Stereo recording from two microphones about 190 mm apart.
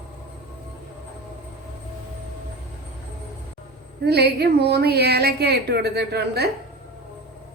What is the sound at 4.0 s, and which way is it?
A woman's voice, 60° right (ahead or behind).